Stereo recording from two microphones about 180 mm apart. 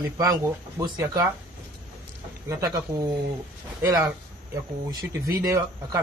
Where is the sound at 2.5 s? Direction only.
15° right (ahead or behind).